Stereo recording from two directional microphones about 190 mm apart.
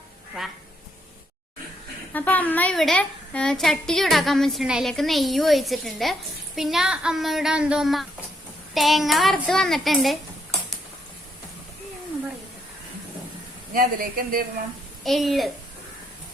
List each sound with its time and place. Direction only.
2.1 s a woman's voice: 10° left (ahead or behind)
13.7 s speech: 50° right (ahead or behind)
15.0 s a woman's voice: centre (ahead or behind)